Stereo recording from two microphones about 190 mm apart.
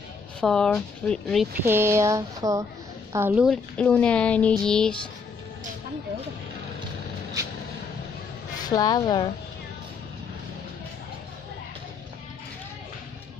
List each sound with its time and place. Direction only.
0.4 s speech: 5° left (ahead or behind)
1.7 s a woman's voice: 15° right (ahead or behind)
3.4 s speech: 5° left (ahead or behind)
8.6 s speech: 20° left (ahead or behind)